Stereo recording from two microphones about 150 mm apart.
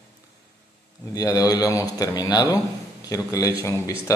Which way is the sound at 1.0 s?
25° left (ahead or behind).